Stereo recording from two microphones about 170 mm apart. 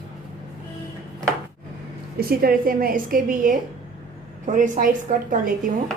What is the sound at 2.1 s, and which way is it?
A woman's voice, 60° right (ahead or behind).